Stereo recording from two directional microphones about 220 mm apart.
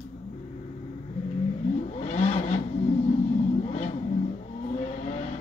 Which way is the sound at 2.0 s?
25° left (ahead or behind).